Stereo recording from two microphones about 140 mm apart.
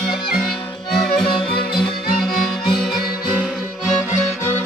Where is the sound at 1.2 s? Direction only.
35° left (ahead or behind).